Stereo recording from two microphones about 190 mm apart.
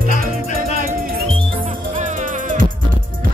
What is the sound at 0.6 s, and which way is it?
Music, 45° right (ahead or behind).